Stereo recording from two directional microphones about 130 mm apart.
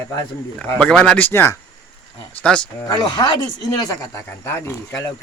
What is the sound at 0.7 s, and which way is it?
Speech, 10° left (ahead or behind).